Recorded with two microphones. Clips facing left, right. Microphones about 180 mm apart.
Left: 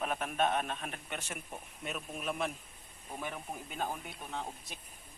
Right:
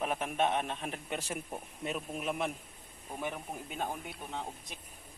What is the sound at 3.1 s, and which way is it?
Speech, 5° right (ahead or behind).